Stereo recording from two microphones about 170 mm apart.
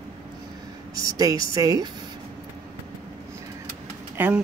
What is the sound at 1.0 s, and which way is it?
Speech, 20° right (ahead or behind).